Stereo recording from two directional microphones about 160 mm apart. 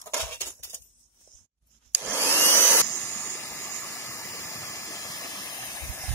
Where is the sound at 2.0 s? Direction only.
15° right (ahead or behind).